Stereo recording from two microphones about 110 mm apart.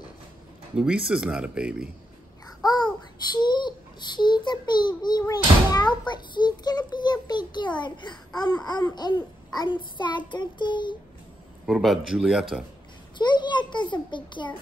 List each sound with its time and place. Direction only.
0.7 s speech: 10° right (ahead or behind)
3.3 s a child's voice: 45° left (ahead or behind)
11.6 s speech: centre (ahead or behind)
13.2 s a child's voice: 45° left (ahead or behind)